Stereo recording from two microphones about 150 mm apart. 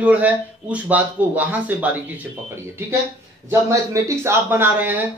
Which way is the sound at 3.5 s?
20° right (ahead or behind).